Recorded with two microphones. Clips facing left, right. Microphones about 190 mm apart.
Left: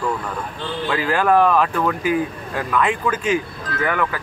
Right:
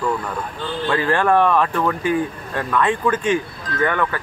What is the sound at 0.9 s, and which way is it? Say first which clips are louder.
Speech: even; 10° left (ahead or behind).